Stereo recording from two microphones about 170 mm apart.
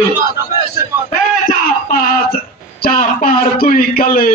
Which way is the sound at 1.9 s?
60° left (ahead or behind).